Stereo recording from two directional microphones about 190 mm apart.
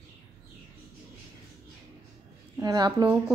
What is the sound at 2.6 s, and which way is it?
Speech, 20° right (ahead or behind).